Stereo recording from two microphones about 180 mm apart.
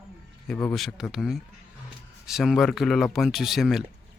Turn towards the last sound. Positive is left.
turn(degrees=0)  # may be behind; listen again after turning